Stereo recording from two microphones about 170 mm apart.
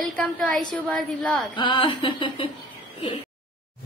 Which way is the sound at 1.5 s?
30° left (ahead or behind).